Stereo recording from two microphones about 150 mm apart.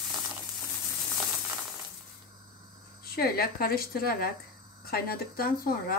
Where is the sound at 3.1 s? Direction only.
90° left.